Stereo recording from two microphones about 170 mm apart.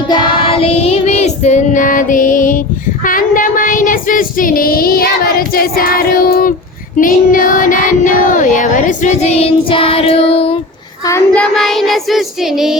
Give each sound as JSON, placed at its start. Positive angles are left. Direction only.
{"t": 0.1, "sound": "child singing", "side_deg": 30}
{"t": 11.1, "sound": "child singing", "side_deg": 5}